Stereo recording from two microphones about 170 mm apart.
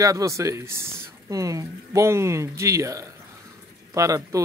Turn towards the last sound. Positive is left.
turn(degrees=-20)  # may be behind; listen again after turning